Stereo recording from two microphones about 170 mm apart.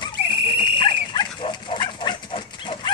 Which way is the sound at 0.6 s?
30° left (ahead or behind).